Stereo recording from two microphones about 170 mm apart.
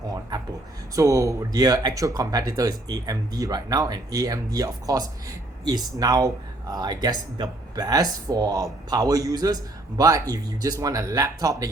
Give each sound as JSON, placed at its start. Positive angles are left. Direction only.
{"t": 0.9, "sound": "speech", "side_deg": -20}